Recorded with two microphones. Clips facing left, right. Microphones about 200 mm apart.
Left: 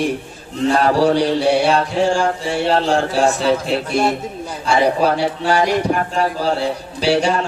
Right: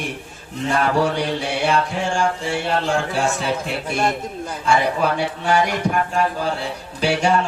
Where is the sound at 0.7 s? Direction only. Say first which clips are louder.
Left 4 dB; 35° left (ahead or behind).